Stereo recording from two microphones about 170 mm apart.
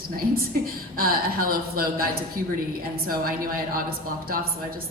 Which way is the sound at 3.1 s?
60° right (ahead or behind).